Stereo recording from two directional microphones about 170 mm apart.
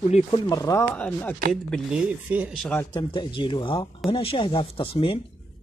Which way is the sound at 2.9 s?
30° left (ahead or behind).